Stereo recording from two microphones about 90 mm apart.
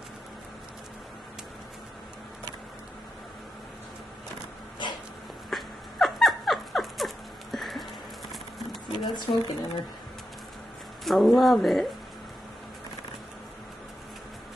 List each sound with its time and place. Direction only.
5.5 s dog: centre (ahead or behind)
7.5 s music: centre (ahead or behind)
9.0 s speech: 50° left (ahead or behind)
11.1 s speech: centre (ahead or behind)